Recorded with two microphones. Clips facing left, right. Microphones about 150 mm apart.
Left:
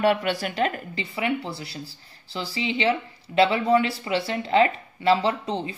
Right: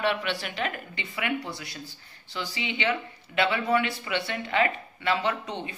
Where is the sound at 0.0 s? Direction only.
45° left (ahead or behind).